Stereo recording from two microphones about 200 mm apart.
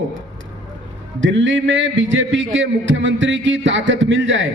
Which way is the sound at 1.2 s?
70° right (ahead or behind).